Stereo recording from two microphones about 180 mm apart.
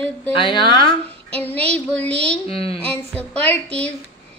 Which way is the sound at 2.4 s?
30° left (ahead or behind).